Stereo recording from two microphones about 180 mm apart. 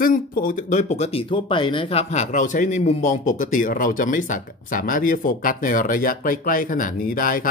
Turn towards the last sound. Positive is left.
turn(degrees=50)  # may be behind; listen again after turning